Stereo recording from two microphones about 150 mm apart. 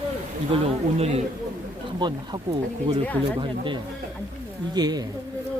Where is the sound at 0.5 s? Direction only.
45° right (ahead or behind).